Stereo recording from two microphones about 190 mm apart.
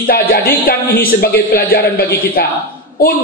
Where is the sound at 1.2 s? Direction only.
50° left (ahead or behind).